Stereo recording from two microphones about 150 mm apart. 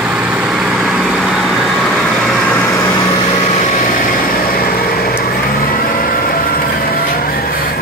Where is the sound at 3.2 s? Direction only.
45° left (ahead or behind); by 7.8 s 80° left.